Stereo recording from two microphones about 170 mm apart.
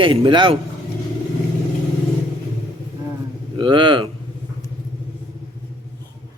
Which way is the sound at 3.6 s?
30° right (ahead or behind).